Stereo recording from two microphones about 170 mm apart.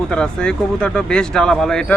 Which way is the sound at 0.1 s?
5° left (ahead or behind).